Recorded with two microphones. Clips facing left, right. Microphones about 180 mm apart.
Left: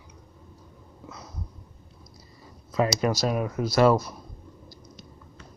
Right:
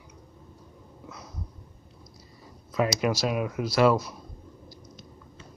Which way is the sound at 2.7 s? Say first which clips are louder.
Left 1 dB; 35° left (ahead or behind).